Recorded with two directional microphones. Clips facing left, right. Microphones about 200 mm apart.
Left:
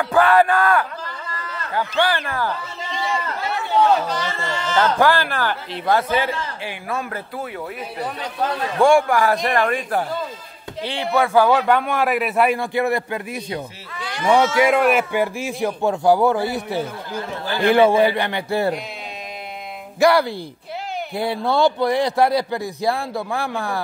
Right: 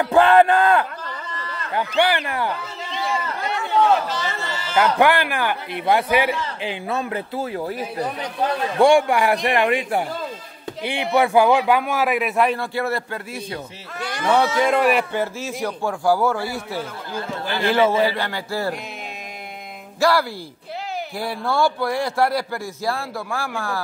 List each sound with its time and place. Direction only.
0.0 s a man's voice: 25° right (ahead or behind)
2.9 s a sound: centre (ahead or behind)
4.1 s a man's voice: 5° right (ahead or behind); by 7.4 s 20° right (ahead or behind)
8.8 s a man's voice: 15° right (ahead or behind); by 12.5 s centre (ahead or behind)
12.5 s speech: 15° left (ahead or behind)
13.9 s a sound: 45° right (ahead or behind)
14.2 s speech: 10° left (ahead or behind)
14.8 s a man's voice: centre (ahead or behind)
15.1 s a man's voice: 15° left (ahead or behind)
20.0 s a man's voice: 20° left (ahead or behind)